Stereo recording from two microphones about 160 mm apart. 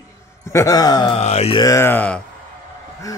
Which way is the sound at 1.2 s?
40° left (ahead or behind).